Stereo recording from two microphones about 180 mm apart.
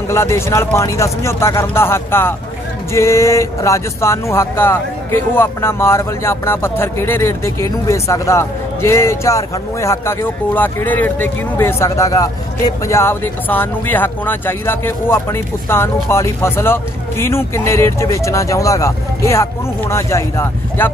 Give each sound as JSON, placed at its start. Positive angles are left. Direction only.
{"t": 0.1, "sound": "speech", "side_deg": 15}